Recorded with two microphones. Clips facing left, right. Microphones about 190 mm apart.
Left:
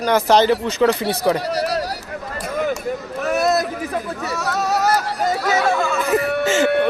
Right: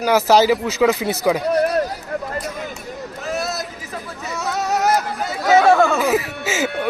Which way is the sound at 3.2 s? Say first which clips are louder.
Left 7 dB; 65° left (ahead or behind).